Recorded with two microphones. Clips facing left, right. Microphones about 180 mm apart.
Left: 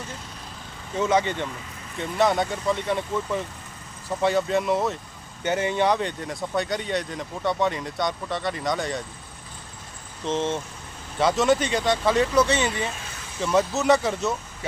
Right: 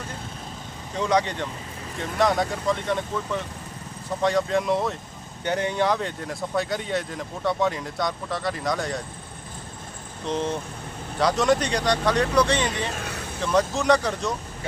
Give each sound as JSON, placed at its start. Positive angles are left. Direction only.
{"t": 0.9, "sound": "speech", "side_deg": 5}
{"t": 4.2, "sound": "speech", "side_deg": 5}
{"t": 10.2, "sound": "speech", "side_deg": 0}
{"t": 13.0, "sound": "vehicle", "side_deg": -65}
{"t": 13.4, "sound": "speech", "side_deg": 5}